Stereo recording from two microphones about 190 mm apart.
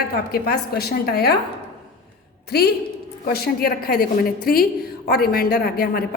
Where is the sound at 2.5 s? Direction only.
55° left (ahead or behind).